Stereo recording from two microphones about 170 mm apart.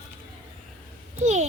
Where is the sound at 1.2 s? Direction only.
40° right (ahead or behind).